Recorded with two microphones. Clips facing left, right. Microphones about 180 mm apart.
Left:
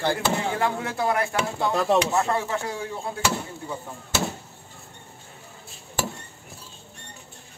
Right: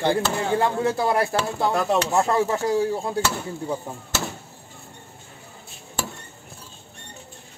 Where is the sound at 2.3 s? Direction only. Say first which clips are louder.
Right 7 dB; 40° right (ahead or behind).